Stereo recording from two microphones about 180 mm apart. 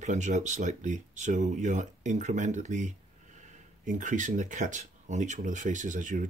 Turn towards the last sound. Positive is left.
turn(degrees=-45)  # may be behind; listen again after turning